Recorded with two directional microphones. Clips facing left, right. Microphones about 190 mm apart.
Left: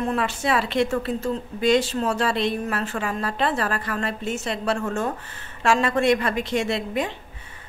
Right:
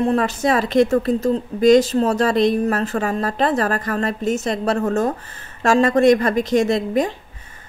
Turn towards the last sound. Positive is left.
turn(degrees=-40)  # may be behind; listen again after turning